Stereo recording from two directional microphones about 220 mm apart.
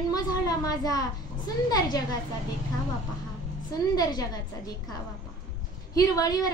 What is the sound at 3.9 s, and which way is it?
Speech, 15° left (ahead or behind).